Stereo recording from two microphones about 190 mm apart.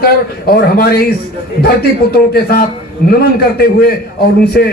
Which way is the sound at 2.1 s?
55° left (ahead or behind).